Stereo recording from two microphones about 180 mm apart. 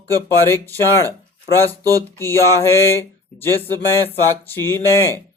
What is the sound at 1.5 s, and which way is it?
Speech, 15° left (ahead or behind).